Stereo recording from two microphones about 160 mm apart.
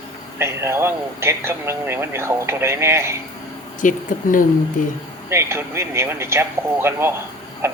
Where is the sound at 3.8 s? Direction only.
55° left (ahead or behind).